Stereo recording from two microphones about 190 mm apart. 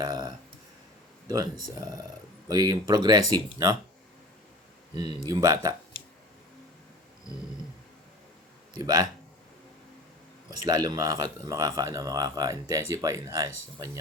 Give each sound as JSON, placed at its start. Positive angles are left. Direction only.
{"t": 0.0, "sound": "a sound", "side_deg": -20}
{"t": 2.5, "sound": "speech", "side_deg": -20}
{"t": 4.9, "sound": "speech", "side_deg": -20}
{"t": 8.7, "sound": "speech", "side_deg": -20}
{"t": 10.7, "sound": "speech", "side_deg": -20}